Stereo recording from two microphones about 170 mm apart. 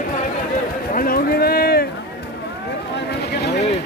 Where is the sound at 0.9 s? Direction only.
60° left (ahead or behind).